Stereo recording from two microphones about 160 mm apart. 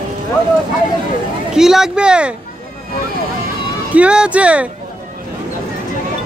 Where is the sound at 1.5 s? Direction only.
5° right (ahead or behind).